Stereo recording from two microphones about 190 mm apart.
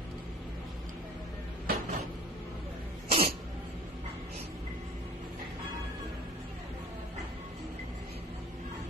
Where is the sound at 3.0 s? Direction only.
30° right (ahead or behind).